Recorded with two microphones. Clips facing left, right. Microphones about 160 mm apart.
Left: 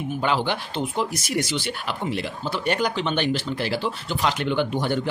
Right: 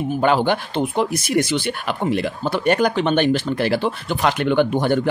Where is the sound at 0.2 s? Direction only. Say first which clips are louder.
Right 7 dB; 50° right (ahead or behind).